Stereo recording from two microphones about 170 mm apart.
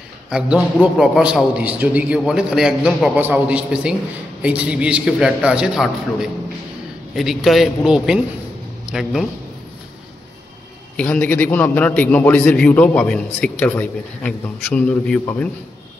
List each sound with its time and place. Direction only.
0.3 s a man's voice: 5° right (ahead or behind)
11.0 s a man's voice: 10° left (ahead or behind)